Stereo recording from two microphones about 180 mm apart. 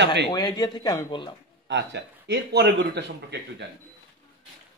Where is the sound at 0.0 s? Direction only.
75° right (ahead or behind).